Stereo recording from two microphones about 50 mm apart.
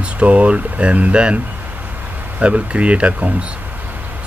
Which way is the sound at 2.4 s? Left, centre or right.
Right.